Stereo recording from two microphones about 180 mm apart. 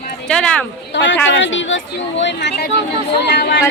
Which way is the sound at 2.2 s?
75° left (ahead or behind).